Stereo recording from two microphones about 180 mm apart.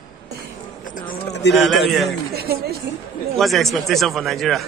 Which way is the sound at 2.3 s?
60° right (ahead or behind).